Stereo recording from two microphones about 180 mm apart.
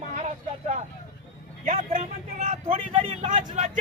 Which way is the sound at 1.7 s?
35° right (ahead or behind).